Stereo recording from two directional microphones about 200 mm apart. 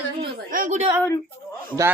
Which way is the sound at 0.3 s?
45° right (ahead or behind).